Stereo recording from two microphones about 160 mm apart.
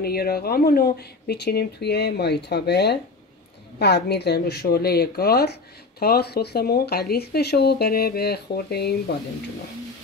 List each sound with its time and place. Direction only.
0.0 s speech: 75° left (ahead or behind)